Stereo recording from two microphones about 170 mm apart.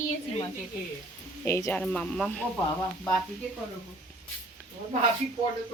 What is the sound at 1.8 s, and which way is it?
Speech, 5° left (ahead or behind).